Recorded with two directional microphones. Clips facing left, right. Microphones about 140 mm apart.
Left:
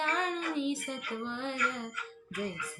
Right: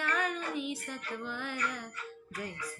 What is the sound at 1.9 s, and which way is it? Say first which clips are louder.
Music: left 3 dB; 40° right (ahead or behind).